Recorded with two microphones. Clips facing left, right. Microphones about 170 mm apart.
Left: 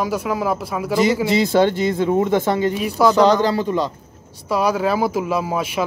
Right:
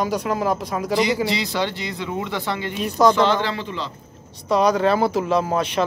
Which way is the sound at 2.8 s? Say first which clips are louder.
Right 4 dB; 5° left (ahead or behind).